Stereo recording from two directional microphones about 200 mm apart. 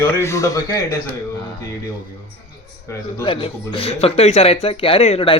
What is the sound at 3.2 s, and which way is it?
Speech, 25° left (ahead or behind).